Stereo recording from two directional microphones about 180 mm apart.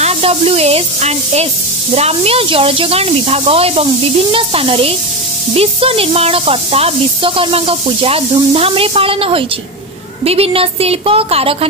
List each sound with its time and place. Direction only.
0.0 s speech: 35° right (ahead or behind)